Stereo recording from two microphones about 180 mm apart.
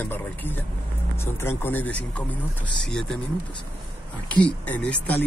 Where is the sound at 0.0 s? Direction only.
10° left (ahead or behind).